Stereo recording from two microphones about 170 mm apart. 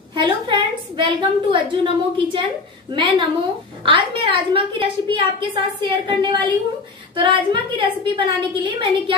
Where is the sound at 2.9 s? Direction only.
25° right (ahead or behind).